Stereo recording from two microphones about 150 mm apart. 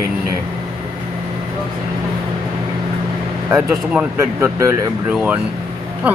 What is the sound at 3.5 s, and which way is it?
A man's voice, 10° right (ahead or behind).